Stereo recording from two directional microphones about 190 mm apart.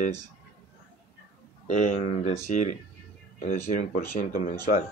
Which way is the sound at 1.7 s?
40° left (ahead or behind).